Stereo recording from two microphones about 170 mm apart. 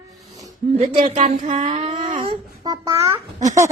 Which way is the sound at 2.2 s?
30° right (ahead or behind).